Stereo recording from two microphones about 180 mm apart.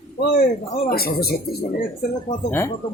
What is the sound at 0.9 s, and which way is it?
Speech, 55° left (ahead or behind).